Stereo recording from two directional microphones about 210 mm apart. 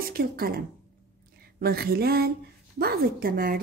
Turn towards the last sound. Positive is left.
turn(degrees=-45)  # may be behind; listen again after turning